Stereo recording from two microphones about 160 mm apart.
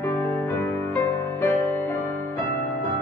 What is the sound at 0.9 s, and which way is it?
Music, 15° left (ahead or behind).